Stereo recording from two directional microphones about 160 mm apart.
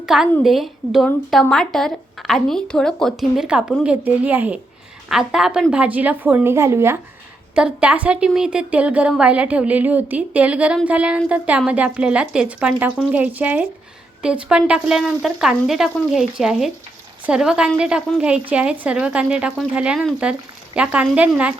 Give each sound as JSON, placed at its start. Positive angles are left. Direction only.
{"t": 0.0, "sound": "a woman's voice", "side_deg": 0}